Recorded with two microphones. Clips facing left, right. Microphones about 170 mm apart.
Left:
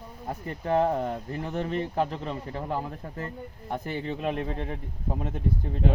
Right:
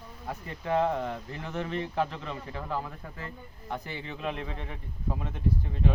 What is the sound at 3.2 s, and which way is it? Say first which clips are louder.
Speech: left 6 dB; 45° left (ahead or behind).